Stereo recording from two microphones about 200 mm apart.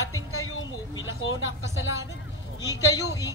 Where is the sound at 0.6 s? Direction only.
75° left (ahead or behind).